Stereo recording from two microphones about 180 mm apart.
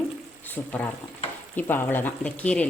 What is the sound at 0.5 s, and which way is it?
Speech, 10° left (ahead or behind).